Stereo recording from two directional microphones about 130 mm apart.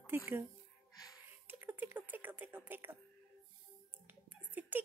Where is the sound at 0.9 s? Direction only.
30° left (ahead or behind).